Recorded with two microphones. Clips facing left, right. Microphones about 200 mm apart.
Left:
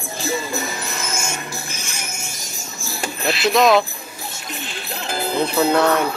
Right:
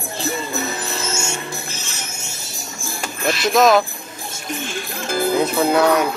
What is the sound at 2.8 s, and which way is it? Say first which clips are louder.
Music: right 1 dB; 50° right (ahead or behind).